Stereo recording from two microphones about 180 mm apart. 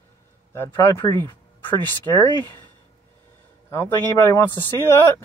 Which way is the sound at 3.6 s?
15° left (ahead or behind).